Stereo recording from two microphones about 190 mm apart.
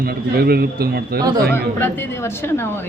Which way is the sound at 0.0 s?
55° right (ahead or behind).